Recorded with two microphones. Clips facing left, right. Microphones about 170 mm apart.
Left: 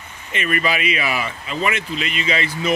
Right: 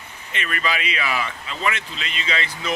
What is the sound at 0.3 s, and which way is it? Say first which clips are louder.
Speech: left 5 dB; 10° left (ahead or behind).